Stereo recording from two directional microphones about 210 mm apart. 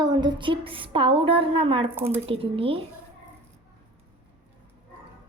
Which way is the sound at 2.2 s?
25° right (ahead or behind).